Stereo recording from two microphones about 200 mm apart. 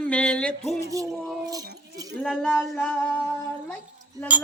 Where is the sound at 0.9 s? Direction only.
15° right (ahead or behind).